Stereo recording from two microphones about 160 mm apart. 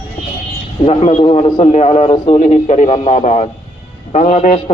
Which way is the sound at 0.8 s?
40° left (ahead or behind).